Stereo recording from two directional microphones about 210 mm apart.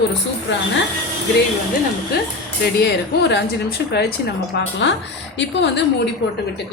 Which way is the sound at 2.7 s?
50° left (ahead or behind).